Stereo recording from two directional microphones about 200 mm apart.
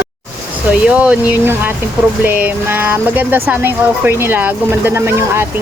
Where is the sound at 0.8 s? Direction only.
5° right (ahead or behind).